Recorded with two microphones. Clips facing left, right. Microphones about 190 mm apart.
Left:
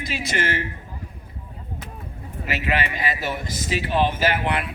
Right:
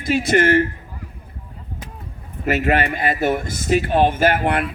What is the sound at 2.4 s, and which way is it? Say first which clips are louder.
Speech: right 7 dB; 50° right (ahead or behind).